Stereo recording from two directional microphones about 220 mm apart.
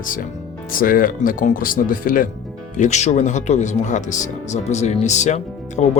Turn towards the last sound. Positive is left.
turn(degrees=30)  # may be behind; listen again after turning